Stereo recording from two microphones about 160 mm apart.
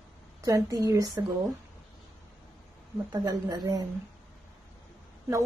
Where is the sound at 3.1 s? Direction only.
25° right (ahead or behind).